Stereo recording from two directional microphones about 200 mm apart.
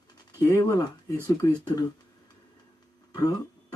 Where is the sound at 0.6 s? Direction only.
15° left (ahead or behind).